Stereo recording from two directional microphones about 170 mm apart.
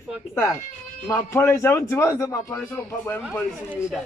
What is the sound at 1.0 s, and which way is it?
Speech, 15° left (ahead or behind).